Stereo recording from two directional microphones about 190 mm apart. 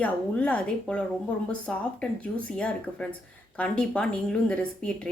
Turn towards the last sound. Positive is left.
turn(degrees=5)  # may be behind; listen again after turning